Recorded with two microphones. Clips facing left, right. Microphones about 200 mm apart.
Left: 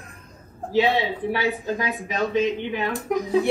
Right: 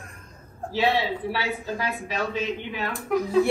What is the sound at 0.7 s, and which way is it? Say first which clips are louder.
A man's voice: left 3 dB; 15° left (ahead or behind).